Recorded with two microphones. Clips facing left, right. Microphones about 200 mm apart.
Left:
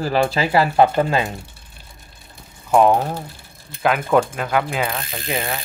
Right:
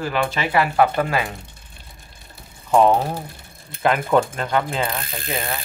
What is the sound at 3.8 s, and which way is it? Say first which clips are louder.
Speech: left 1 dB; centre (ahead or behind).